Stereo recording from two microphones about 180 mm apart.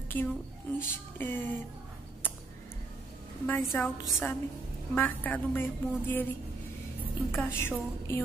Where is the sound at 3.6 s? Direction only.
Centre (ahead or behind).